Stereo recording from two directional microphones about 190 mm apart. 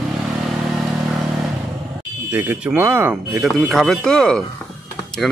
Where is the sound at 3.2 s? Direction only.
Centre (ahead or behind).